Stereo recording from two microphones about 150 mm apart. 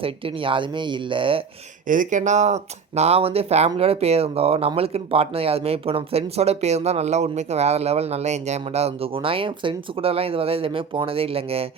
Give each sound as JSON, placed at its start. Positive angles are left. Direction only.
{"t": 0.0, "sound": "speech", "side_deg": -35}
{"t": 1.9, "sound": "speech", "side_deg": -60}